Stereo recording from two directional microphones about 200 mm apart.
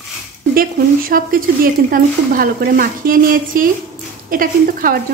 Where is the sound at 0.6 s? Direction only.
45° right (ahead or behind).